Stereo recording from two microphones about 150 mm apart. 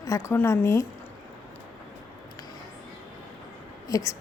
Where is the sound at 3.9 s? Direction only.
20° left (ahead or behind).